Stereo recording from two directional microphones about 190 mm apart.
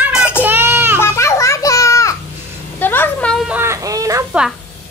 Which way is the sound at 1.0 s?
15° left (ahead or behind).